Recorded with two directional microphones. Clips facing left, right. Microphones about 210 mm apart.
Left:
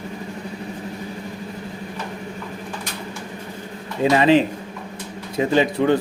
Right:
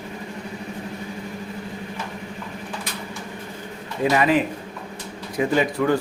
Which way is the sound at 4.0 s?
25° left (ahead or behind).